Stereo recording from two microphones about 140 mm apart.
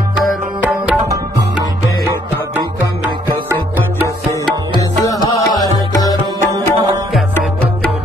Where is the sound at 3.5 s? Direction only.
20° right (ahead or behind).